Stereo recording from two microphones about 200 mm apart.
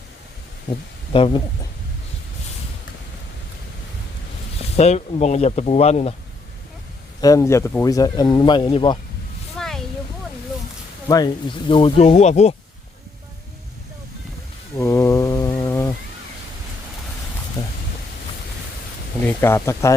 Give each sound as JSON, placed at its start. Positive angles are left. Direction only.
{"t": 1.1, "sound": "speech", "side_deg": 25}
{"t": 4.8, "sound": "speech", "side_deg": 35}
{"t": 7.2, "sound": "speech", "side_deg": 15}
{"t": 9.6, "sound": "a sound", "side_deg": 0}
{"t": 11.1, "sound": "speech", "side_deg": 15}
{"t": 11.7, "sound": "speech", "side_deg": 30}
{"t": 14.8, "sound": "a sound", "side_deg": 15}
{"t": 19.2, "sound": "speech", "side_deg": 10}